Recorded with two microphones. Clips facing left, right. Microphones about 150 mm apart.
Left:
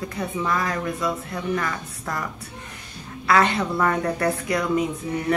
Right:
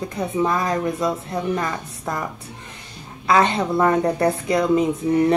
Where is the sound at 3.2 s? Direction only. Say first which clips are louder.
Right 2 dB; 25° right (ahead or behind).